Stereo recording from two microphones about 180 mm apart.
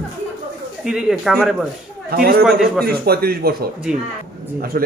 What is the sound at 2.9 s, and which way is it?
Speech, 60° right (ahead or behind).